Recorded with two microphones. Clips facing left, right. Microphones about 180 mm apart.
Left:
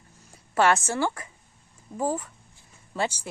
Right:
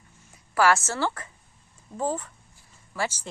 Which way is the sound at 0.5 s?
20° left (ahead or behind).